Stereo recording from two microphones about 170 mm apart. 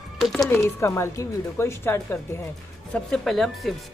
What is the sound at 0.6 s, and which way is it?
A woman's voice, 15° left (ahead or behind).